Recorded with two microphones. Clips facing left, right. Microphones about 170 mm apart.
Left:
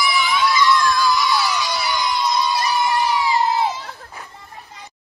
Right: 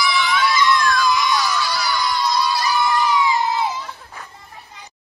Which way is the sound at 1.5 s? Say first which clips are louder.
Even; 20° left (ahead or behind).